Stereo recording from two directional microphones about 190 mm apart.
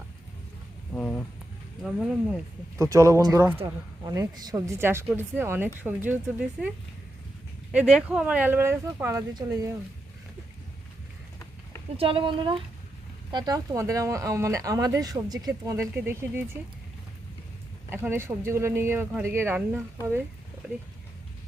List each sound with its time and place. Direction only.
0.9 s a sound: 5° left (ahead or behind)
1.8 s speech: centre (ahead or behind)
2.7 s a woman's voice: 15° right (ahead or behind)
11.9 s a woman's voice: 30° right (ahead or behind); by 16.4 s 10° right (ahead or behind)
17.9 s a woman's voice: 10° right (ahead or behind)